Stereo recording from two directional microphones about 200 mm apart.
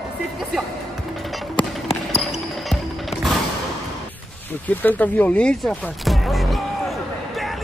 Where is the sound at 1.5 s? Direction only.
30° left (ahead or behind).